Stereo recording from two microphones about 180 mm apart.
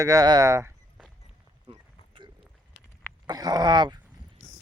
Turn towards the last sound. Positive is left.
turn(degrees=-25)  # may be behind; listen again after turning